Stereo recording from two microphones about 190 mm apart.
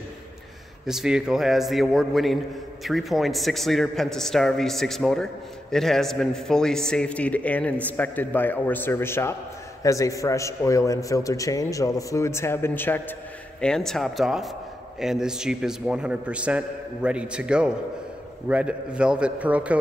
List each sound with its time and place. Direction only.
0.8 s a man's voice: 5° right (ahead or behind)